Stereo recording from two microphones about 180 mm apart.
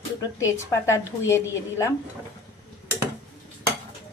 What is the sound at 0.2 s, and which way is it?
A woman's voice, 15° left (ahead or behind).